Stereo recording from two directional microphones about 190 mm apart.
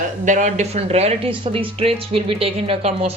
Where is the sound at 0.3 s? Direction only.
40° right (ahead or behind).